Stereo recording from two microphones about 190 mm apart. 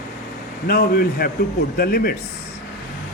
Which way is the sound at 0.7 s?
55° left (ahead or behind).